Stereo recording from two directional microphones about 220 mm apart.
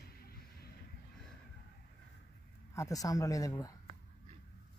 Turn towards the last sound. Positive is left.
turn(degrees=15)  # may be behind; listen again after turning